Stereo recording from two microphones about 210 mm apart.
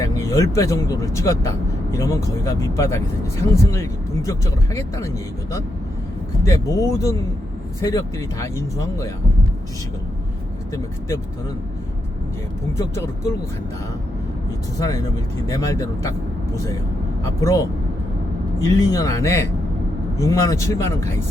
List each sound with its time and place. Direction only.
0.0 s speech: 15° left (ahead or behind)
12.7 s speech: 15° left (ahead or behind)
14.8 s speech: 15° left (ahead or behind)
17.2 s speech: 15° left (ahead or behind)
18.8 s speech: 15° left (ahead or behind)